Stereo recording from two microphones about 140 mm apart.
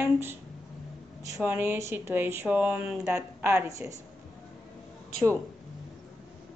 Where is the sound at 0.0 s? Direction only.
15° right (ahead or behind).